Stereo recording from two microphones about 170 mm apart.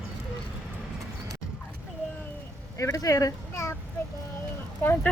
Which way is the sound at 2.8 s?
20° left (ahead or behind).